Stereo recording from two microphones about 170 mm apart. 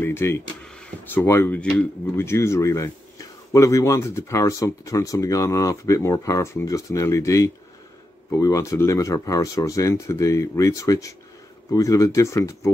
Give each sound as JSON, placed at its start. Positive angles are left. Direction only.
{"t": 0.0, "sound": "speech", "side_deg": 15}